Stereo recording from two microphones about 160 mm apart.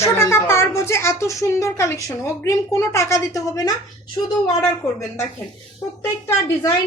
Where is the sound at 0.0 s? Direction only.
15° left (ahead or behind).